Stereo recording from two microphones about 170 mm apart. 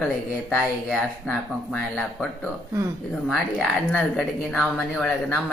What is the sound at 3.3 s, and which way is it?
A woman's voice, 5° left (ahead or behind).